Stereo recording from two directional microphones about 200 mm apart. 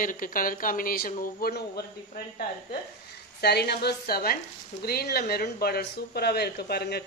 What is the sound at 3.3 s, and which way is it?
A woman's voice, 55° left (ahead or behind).